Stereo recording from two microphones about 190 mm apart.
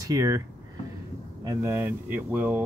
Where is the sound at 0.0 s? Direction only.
20° right (ahead or behind).